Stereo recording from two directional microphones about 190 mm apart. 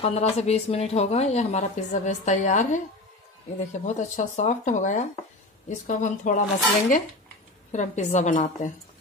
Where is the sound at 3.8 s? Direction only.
40° left (ahead or behind).